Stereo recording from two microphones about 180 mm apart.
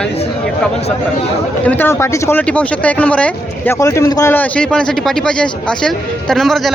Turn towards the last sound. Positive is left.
turn(degrees=0)  # may be behind; listen again after turning